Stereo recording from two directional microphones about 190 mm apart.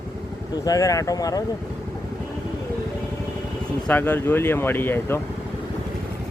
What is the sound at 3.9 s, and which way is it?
Speech, 10° left (ahead or behind).